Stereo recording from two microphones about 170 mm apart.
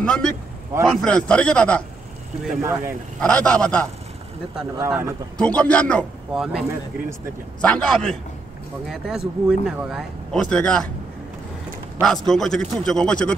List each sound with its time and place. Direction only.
0.0 s a man's voice: 5° left (ahead or behind)
2.6 s speech: 15° right (ahead or behind)
3.2 s speech: 5° left (ahead or behind)
4.7 s speech: 15° right (ahead or behind)
5.4 s speech: 5° left (ahead or behind)
7.6 s speech: 5° left (ahead or behind)
12.0 s speech: centre (ahead or behind)